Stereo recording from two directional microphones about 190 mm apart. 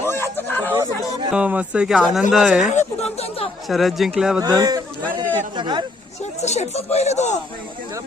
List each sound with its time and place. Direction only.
0.0 s a sound: 15° left (ahead or behind)
1.3 s speech: 5° right (ahead or behind)
2.6 s chatter: 35° left (ahead or behind)
3.7 s speech: centre (ahead or behind)
4.4 s a sound: 20° right (ahead or behind)
5.5 s speech: 25° right (ahead or behind)
6.4 s speech: 35° left (ahead or behind)